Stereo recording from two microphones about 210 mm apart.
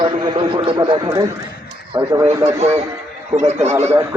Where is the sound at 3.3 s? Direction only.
30° right (ahead or behind).